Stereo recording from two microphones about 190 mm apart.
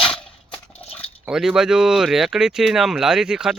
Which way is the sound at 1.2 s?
Centre (ahead or behind).